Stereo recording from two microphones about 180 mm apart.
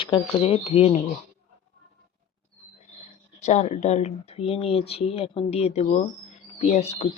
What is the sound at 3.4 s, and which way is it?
Speech, 40° left (ahead or behind).